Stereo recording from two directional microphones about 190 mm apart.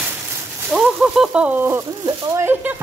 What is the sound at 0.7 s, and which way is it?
Speech, 5° right (ahead or behind).